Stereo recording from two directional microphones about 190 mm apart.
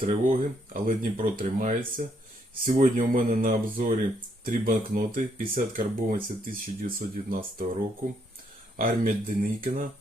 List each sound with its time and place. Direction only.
0.1 s speech: 45° right (ahead or behind)
8.7 s speech: 50° right (ahead or behind)